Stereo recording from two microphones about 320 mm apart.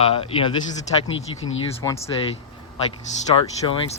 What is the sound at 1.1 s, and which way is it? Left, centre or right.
Speech, left.